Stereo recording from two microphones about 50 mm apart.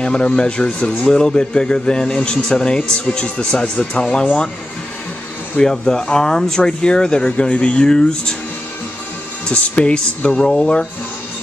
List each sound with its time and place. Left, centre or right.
0.0 s speech: centre
5.6 s speech: centre
9.5 s speech: left